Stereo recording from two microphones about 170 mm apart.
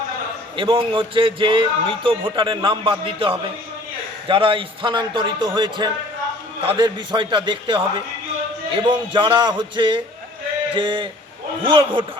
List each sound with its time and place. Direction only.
0.5 s a man's voice: 30° right (ahead or behind)